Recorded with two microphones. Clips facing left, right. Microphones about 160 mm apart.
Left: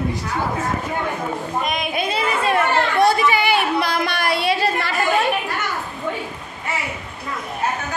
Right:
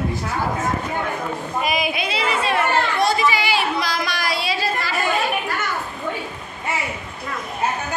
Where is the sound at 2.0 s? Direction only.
45° left (ahead or behind); by 4.9 s 60° left (ahead or behind).